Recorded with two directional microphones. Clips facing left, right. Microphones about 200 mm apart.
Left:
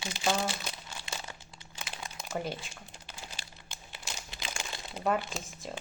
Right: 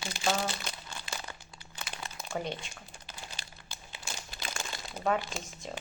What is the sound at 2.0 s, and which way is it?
Crumpling, 5° left (ahead or behind).